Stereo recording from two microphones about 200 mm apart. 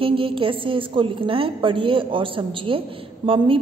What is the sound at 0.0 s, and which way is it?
A woman's voice, 25° right (ahead or behind).